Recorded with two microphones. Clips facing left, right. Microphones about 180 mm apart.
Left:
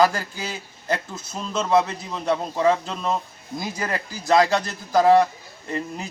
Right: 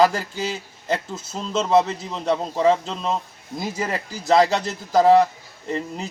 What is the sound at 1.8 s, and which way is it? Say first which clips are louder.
Speech: right 2 dB; 25° right (ahead or behind).